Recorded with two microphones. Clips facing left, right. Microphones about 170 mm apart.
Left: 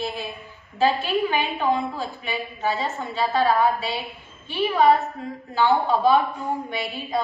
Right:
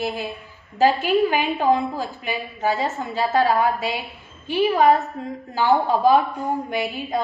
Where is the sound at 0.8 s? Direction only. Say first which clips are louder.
Right 4 dB; 40° right (ahead or behind).